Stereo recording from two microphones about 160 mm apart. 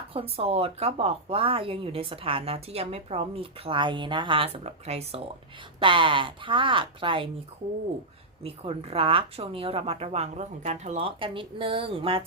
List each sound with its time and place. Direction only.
0.1 s speech: 35° right (ahead or behind)
8.4 s speech: 35° right (ahead or behind)